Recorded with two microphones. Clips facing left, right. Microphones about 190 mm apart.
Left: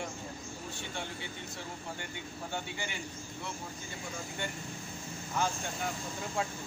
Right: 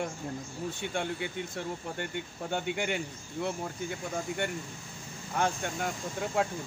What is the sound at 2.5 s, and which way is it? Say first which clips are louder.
Speech: right 10 dB; 65° right (ahead or behind).